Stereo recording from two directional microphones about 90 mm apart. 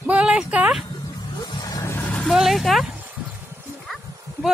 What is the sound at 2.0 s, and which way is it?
Vehicle, 10° left (ahead or behind).